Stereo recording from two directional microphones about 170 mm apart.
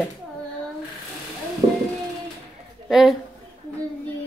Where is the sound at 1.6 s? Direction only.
45° right (ahead or behind).